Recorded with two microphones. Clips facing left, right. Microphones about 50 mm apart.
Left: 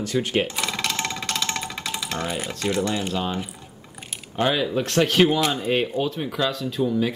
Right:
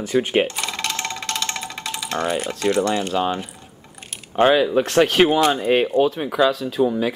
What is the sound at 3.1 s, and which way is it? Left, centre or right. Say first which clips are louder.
Speech: right 5 dB; centre.